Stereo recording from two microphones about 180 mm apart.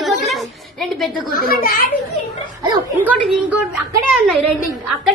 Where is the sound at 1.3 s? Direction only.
55° left (ahead or behind).